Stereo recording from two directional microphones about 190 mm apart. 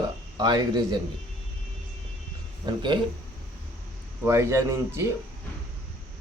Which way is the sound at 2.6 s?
20° right (ahead or behind).